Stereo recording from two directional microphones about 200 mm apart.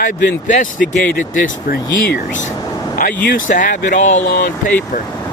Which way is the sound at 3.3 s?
40° left (ahead or behind).